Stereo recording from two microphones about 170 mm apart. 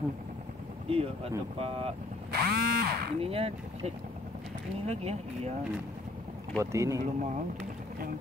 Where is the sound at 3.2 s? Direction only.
35° right (ahead or behind).